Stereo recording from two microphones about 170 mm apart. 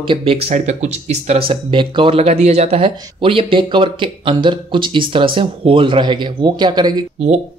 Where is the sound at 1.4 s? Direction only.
30° right (ahead or behind).